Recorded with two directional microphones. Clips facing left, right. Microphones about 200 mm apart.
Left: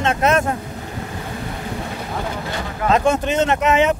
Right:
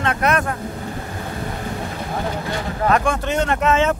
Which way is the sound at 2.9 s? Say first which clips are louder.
Left 4 dB; 20° left (ahead or behind).